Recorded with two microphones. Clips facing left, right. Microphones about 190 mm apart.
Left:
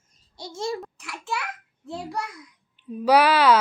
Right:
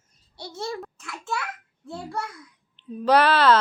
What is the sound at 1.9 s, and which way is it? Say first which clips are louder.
Speech: left 1 dB; 15° left (ahead or behind).